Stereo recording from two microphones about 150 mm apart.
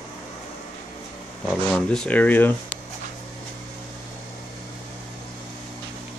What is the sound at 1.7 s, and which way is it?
Speech, 5° left (ahead or behind).